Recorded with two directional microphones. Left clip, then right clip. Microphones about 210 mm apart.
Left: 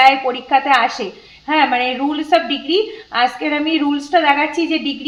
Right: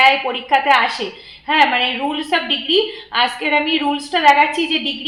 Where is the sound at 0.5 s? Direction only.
45° left (ahead or behind).